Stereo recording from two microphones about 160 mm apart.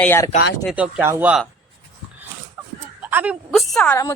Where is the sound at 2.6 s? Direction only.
10° right (ahead or behind).